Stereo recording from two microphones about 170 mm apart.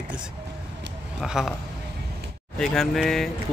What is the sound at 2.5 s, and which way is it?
Speech, centre (ahead or behind).